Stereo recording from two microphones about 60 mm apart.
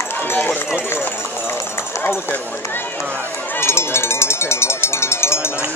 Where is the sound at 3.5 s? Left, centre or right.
Left.